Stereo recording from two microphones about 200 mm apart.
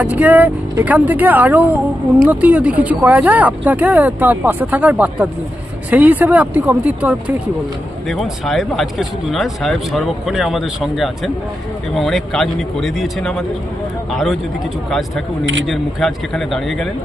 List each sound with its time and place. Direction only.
0.0 s speech: 10° right (ahead or behind)
15.6 s speech: centre (ahead or behind)